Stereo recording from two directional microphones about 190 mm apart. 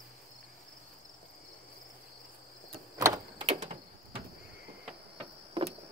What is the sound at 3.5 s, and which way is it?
Sliding door, 30° right (ahead or behind).